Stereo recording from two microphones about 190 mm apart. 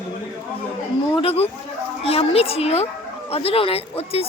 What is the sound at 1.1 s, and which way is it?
Speech, 30° left (ahead or behind).